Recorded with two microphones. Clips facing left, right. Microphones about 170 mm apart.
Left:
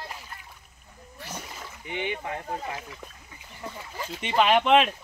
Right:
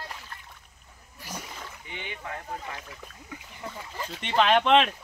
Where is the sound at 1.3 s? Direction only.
5° left (ahead or behind).